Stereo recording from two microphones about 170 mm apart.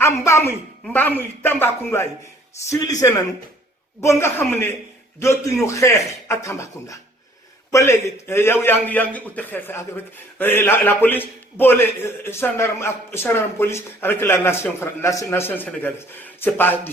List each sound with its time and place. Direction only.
0.0 s a woman's voice: 15° left (ahead or behind)